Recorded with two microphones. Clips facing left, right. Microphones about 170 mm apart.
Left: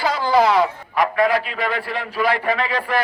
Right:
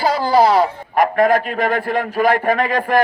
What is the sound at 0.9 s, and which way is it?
A man's voice, 50° right (ahead or behind).